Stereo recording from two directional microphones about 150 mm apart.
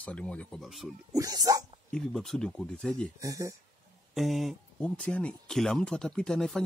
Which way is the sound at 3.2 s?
20° right (ahead or behind).